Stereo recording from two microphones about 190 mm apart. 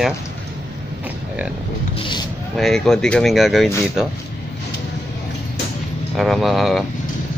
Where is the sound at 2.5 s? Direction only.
Centre (ahead or behind).